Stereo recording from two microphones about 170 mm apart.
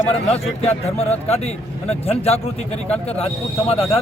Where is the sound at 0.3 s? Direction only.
35° left (ahead or behind).